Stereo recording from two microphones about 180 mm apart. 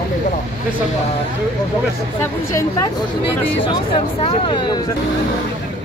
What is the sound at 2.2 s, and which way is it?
Speech, 15° left (ahead or behind).